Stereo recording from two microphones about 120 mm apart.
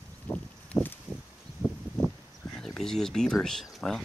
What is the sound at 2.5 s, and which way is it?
Speech, centre (ahead or behind).